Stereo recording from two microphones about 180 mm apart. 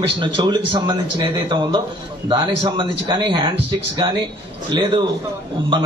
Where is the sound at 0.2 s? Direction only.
25° right (ahead or behind).